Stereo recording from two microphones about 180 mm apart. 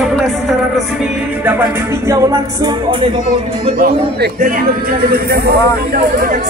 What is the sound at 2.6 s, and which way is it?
Music, 30° right (ahead or behind).